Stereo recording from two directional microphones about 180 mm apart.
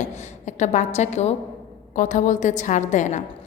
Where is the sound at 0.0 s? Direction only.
40° left (ahead or behind).